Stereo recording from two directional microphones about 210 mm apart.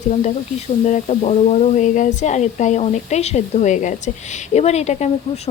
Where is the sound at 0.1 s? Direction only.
35° left (ahead or behind).